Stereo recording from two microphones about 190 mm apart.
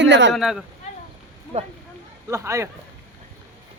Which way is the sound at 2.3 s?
15° right (ahead or behind).